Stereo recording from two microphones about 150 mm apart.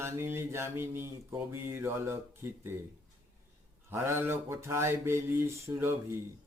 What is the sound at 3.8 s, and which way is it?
Mantra, 15° right (ahead or behind).